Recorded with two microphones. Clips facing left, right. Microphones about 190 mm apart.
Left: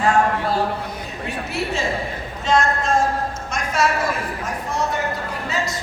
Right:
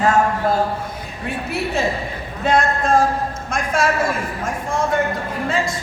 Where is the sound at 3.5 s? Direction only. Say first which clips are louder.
Right 1 dB; 50° right (ahead or behind).